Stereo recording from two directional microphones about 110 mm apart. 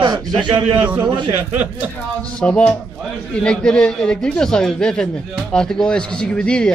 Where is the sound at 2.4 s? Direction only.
10° left (ahead or behind).